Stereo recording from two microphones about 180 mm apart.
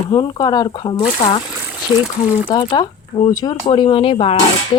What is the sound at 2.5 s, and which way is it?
Speech, 25° left (ahead or behind).